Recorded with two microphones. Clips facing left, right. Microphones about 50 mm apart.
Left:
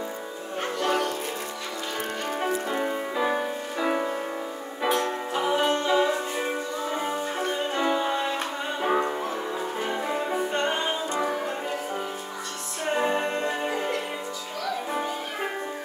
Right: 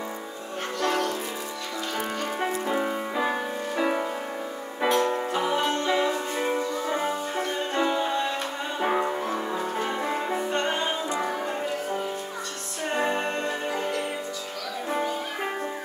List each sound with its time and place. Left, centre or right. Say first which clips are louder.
0.7 s music: even; centre
2.6 s music: right 1 dB; centre
8.7 s music: even; centre
10.3 s music: even; centre
11.1 s music: left 1 dB; centre
12.9 s music: left 1 dB; centre
13.5 s music: left 1 dB; centre